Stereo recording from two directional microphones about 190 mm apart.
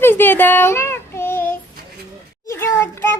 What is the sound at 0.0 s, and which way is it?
Child singing, 10° left (ahead or behind).